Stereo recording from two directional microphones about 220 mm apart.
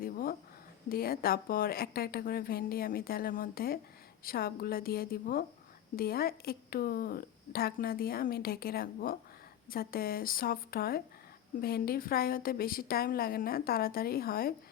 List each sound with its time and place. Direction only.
0.0 s a woman's voice: 40° left (ahead or behind)